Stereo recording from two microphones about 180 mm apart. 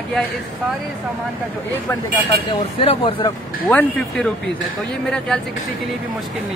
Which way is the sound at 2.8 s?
30° left (ahead or behind).